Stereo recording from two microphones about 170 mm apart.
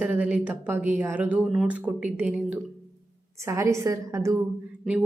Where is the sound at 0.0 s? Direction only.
10° right (ahead or behind).